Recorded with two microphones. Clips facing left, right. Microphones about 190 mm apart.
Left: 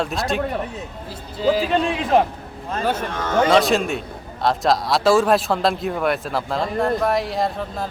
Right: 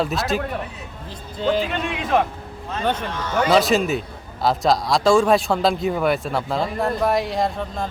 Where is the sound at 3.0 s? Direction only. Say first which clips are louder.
Left 2 dB; 50° left (ahead or behind).